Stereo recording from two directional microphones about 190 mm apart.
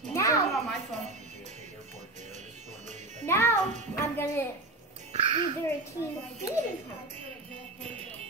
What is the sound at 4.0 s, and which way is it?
Speech, 15° left (ahead or behind).